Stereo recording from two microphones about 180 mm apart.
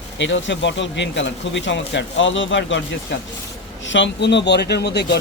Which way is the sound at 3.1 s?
75° left (ahead or behind).